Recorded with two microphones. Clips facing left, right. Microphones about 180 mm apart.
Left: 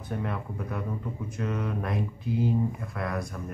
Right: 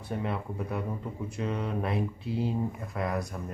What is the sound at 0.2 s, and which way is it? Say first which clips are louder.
Mantra: right 1 dB; 20° right (ahead or behind).